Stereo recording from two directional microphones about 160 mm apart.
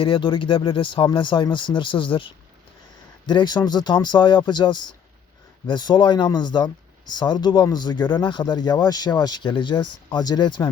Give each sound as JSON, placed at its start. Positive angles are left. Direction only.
{"t": 0.0, "sound": "speech", "side_deg": 30}